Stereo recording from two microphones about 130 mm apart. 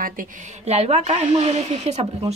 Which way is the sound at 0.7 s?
55° right (ahead or behind).